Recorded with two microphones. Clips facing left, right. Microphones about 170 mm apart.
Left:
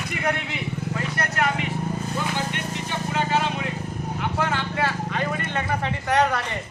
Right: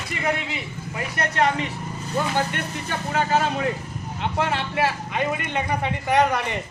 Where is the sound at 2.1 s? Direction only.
50° right (ahead or behind).